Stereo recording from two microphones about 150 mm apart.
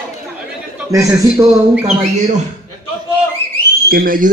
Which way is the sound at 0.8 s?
20° right (ahead or behind).